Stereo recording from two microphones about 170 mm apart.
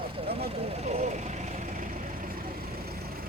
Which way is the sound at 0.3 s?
35° right (ahead or behind).